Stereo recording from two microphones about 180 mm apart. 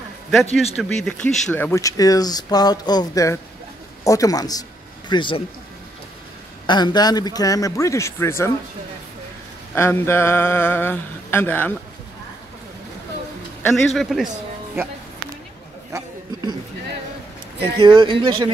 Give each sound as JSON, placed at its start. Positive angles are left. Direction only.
{"t": 0.3, "sound": "a man's voice", "side_deg": 0}
{"t": 6.6, "sound": "speech", "side_deg": 25}
{"t": 9.8, "sound": "a sound", "side_deg": 15}
{"t": 13.9, "sound": "a man's voice", "side_deg": 0}
{"t": 15.9, "sound": "chatter", "side_deg": -20}
{"t": 17.6, "sound": "speech", "side_deg": -25}